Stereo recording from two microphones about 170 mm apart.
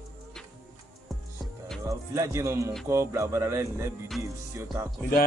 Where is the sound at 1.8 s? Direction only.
20° right (ahead or behind).